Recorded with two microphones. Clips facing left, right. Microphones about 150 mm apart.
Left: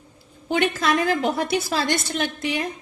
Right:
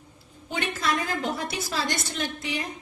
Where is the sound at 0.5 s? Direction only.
75° left (ahead or behind).